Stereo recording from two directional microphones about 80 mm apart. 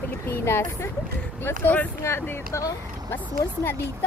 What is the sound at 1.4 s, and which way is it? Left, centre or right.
Speech, left.